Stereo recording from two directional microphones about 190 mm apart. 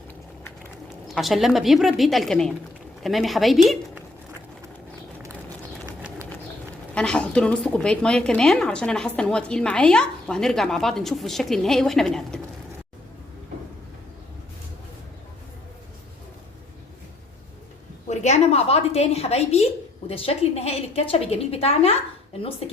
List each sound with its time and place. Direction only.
1.0 s speech: centre (ahead or behind)
6.9 s speech: 5° left (ahead or behind)
18.1 s a woman's voice: 35° left (ahead or behind)